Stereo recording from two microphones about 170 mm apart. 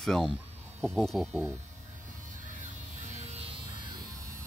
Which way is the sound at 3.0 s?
40° right (ahead or behind).